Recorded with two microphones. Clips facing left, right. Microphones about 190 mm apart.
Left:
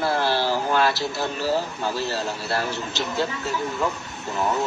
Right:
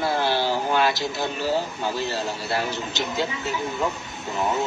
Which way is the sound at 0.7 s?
5° right (ahead or behind).